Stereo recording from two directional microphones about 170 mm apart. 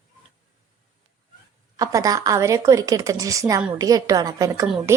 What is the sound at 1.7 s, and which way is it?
A woman's voice, 20° right (ahead or behind).